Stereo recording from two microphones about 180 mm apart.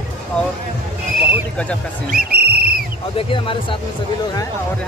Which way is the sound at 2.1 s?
60° right (ahead or behind).